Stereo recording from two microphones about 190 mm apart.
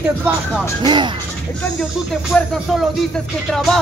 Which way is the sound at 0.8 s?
25° right (ahead or behind).